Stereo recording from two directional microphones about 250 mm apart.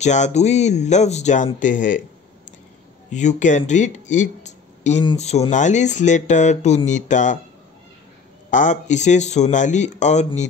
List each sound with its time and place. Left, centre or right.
0.0 s speech: left
3.1 s speech: left
8.5 s speech: left